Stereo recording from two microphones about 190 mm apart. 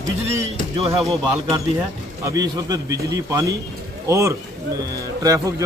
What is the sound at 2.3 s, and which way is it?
A man's voice, 20° right (ahead or behind).